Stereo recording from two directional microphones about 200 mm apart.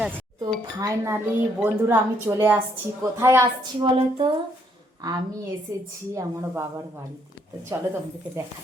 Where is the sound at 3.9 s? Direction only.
25° right (ahead or behind).